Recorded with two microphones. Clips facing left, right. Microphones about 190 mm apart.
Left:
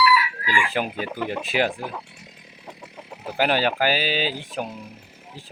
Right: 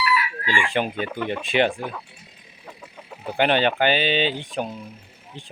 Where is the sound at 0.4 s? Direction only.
30° right (ahead or behind).